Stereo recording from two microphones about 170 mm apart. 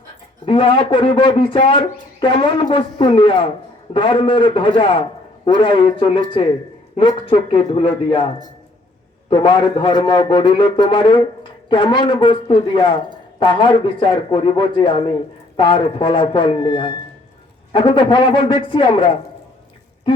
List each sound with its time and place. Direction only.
0.4 s a man's voice: 30° left (ahead or behind)
9.3 s a man's voice: 30° left (ahead or behind)